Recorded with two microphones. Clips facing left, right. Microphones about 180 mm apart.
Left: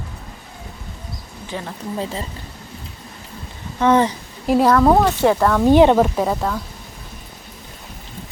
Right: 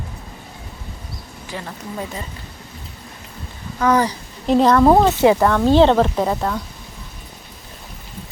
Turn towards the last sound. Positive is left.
turn(degrees=0)  # may be behind; listen again after turning